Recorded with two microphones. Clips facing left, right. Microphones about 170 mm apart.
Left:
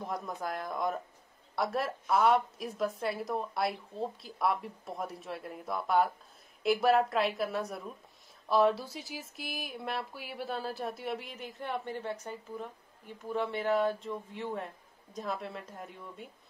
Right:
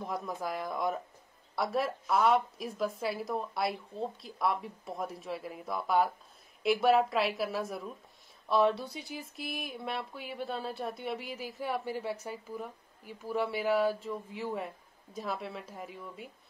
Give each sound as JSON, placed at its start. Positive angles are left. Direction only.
{"t": 0.0, "sound": "speech", "side_deg": 0}